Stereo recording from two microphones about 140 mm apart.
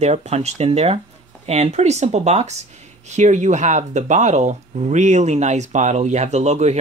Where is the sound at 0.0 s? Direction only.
55° right (ahead or behind).